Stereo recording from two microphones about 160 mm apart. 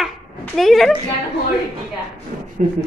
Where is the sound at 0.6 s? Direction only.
Centre (ahead or behind).